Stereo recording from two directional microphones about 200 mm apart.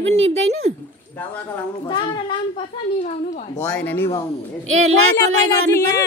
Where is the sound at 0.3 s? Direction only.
35° right (ahead or behind).